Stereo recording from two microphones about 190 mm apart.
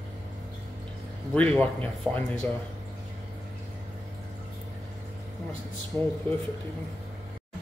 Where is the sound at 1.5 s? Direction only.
5° left (ahead or behind).